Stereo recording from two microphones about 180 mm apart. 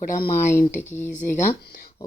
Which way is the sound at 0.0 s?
50° left (ahead or behind).